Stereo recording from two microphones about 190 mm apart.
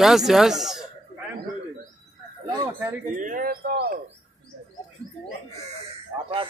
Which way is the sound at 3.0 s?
45° right (ahead or behind).